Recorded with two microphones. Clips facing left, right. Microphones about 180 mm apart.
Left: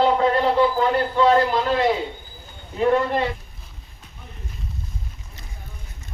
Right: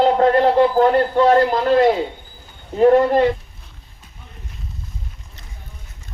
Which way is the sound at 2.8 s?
45° right (ahead or behind).